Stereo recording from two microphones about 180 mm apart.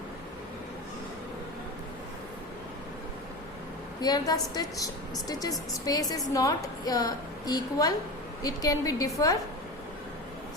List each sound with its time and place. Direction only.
4.0 s a woman's voice: 20° left (ahead or behind)